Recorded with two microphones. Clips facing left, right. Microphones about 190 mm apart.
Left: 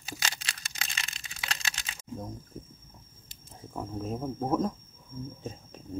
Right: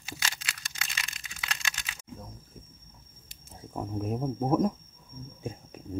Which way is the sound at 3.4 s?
10° right (ahead or behind).